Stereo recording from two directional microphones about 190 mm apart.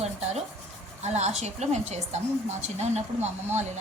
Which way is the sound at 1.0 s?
35° right (ahead or behind).